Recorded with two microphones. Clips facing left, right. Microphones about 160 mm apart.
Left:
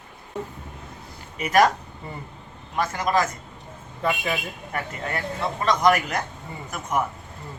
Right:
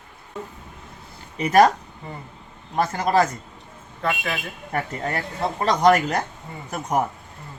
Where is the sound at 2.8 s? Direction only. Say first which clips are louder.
Right 3 dB; 35° right (ahead or behind).